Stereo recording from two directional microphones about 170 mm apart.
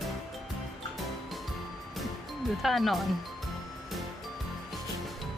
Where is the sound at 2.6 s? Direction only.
Centre (ahead or behind).